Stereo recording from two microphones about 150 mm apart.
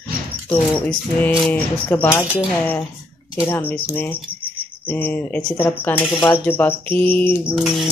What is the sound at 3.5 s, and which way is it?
Speech, 10° left (ahead or behind).